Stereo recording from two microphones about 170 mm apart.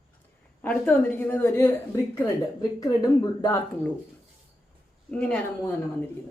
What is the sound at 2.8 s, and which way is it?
Speech, 20° left (ahead or behind).